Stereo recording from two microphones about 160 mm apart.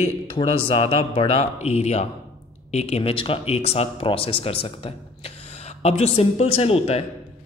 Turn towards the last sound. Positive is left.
turn(degrees=40)  # may be behind; listen again after turning